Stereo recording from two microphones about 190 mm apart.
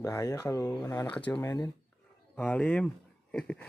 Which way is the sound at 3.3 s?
5° left (ahead or behind).